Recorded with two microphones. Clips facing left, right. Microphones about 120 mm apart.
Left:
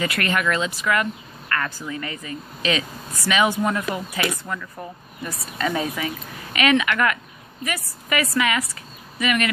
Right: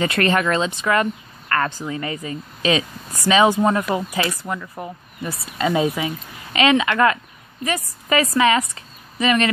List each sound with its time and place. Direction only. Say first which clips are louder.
0.0 s a woman's voice: right 4 dB; 30° right (ahead or behind)